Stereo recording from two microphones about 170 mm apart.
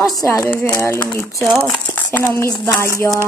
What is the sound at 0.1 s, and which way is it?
Speech, 20° left (ahead or behind).